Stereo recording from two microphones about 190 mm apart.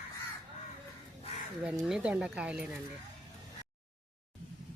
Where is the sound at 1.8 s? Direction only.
5° right (ahead or behind).